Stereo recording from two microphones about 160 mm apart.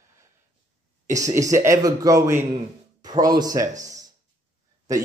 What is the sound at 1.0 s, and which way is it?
A man's voice, 20° right (ahead or behind).